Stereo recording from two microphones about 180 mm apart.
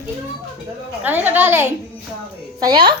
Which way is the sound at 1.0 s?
10° right (ahead or behind).